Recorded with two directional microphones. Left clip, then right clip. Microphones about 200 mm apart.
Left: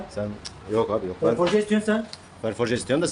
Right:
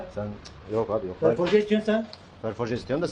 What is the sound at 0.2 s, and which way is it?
Speech, 5° left (ahead or behind).